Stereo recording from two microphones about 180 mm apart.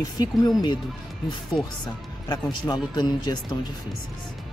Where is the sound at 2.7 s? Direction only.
20° left (ahead or behind).